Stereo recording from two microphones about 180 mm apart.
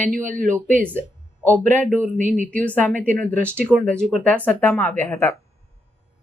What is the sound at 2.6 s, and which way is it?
Speech, 10° left (ahead or behind).